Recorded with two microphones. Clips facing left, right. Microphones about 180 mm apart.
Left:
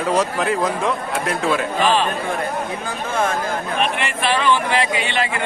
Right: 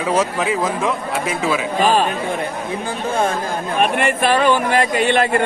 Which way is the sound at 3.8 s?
45° right (ahead or behind).